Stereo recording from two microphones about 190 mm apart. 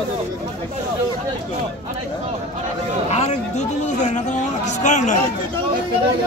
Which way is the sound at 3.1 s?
35° left (ahead or behind).